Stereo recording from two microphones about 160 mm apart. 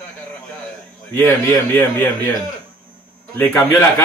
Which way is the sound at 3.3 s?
10° left (ahead or behind).